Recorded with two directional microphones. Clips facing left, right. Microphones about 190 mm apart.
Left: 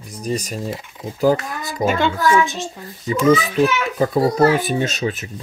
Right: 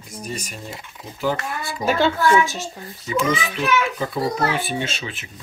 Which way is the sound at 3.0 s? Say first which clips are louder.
Left 7 dB; 40° left (ahead or behind).